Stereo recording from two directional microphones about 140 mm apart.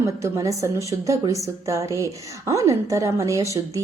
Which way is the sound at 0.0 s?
25° right (ahead or behind).